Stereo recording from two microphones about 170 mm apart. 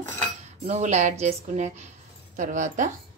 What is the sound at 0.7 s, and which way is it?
Cutlery, 40° right (ahead or behind).